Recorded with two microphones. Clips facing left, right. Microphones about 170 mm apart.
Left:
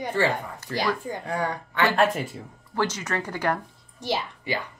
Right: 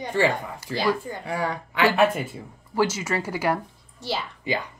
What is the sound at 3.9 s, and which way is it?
Speech, 15° left (ahead or behind).